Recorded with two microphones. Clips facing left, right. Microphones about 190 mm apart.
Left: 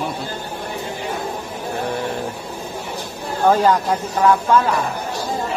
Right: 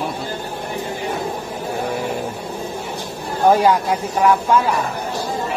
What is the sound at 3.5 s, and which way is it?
Speech, 10° right (ahead or behind).